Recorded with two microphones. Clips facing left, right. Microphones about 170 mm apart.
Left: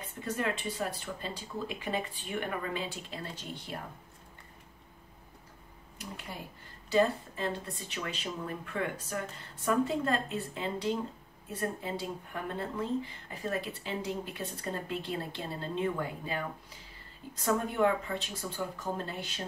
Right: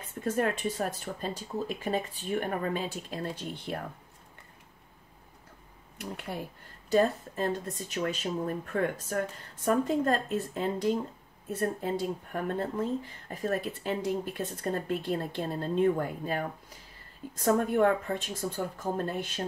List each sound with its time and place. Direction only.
0.0 s speech: 50° right (ahead or behind)
5.9 s speech: 60° right (ahead or behind)
6.9 s speech: 45° right (ahead or behind)